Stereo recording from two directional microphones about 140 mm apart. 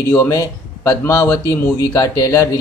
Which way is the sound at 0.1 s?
20° left (ahead or behind).